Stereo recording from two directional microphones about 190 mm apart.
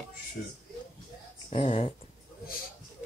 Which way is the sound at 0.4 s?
50° left (ahead or behind).